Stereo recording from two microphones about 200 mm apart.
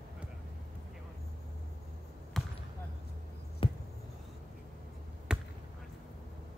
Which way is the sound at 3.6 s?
25° left (ahead or behind).